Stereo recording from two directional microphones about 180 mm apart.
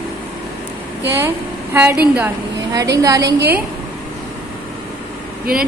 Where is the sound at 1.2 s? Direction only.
10° right (ahead or behind).